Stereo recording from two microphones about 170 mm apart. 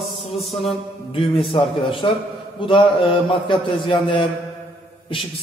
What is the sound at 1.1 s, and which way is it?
A man's voice, 30° left (ahead or behind).